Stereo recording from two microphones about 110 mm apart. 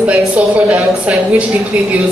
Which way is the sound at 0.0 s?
10° right (ahead or behind).